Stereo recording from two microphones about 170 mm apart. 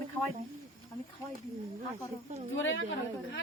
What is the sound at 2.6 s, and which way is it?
Speech, 90° left.